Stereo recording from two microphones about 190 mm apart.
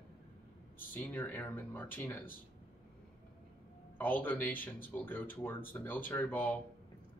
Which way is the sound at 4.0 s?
10° left (ahead or behind).